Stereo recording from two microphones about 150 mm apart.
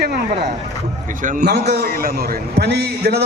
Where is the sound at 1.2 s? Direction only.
90° right.